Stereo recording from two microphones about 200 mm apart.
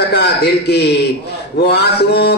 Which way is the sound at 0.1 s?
55° left (ahead or behind).